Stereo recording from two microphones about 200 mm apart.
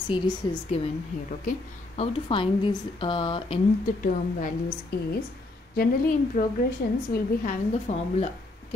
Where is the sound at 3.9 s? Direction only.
40° left (ahead or behind).